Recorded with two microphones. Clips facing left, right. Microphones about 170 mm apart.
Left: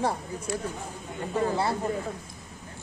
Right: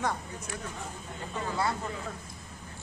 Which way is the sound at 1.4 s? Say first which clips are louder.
Left 4 dB; 30° left (ahead or behind).